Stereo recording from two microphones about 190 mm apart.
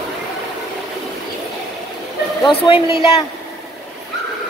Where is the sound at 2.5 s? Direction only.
30° left (ahead or behind).